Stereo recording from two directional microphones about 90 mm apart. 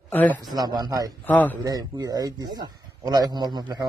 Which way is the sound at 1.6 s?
50° right (ahead or behind).